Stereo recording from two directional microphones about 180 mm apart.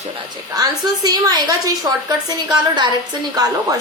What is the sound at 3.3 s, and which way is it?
Speech, 20° right (ahead or behind).